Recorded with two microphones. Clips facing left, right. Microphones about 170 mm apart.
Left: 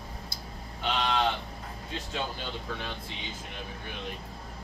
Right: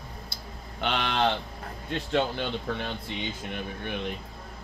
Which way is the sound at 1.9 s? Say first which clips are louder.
Right 9 dB; 70° right (ahead or behind).